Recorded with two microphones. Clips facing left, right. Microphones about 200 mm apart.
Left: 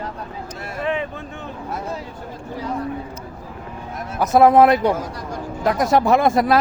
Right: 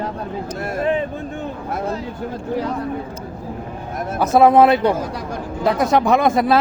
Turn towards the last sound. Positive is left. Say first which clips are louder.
# right 1 dB
turn(degrees=-20)  # may be behind; listen again after turning